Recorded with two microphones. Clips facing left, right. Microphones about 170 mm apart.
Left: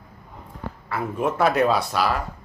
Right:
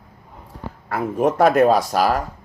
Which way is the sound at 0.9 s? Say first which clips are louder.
Right 5 dB; 40° right (ahead or behind).